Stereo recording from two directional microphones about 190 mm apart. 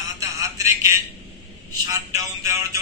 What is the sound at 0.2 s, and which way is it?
Telephone, 15° right (ahead or behind).